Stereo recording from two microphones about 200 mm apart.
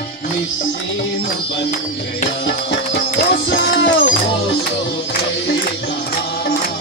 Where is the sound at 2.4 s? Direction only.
60° left (ahead or behind).